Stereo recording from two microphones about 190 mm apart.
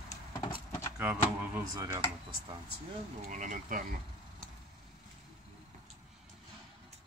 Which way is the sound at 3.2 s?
45° right (ahead or behind).